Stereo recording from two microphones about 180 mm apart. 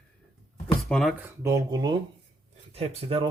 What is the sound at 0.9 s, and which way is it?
Speech, centre (ahead or behind).